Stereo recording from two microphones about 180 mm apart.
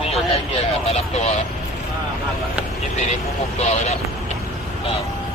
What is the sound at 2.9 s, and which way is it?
Speech, 40° left (ahead or behind).